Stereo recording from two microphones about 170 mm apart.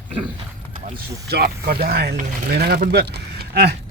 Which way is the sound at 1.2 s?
65° right (ahead or behind).